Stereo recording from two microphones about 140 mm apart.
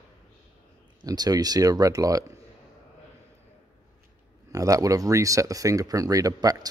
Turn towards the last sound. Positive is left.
turn(degrees=-25)  # may be behind; listen again after turning